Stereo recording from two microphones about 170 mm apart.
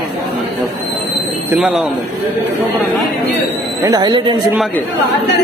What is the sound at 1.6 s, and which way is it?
Speech, 5° right (ahead or behind).